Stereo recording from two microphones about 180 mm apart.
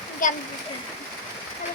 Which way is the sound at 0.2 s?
45° left (ahead or behind).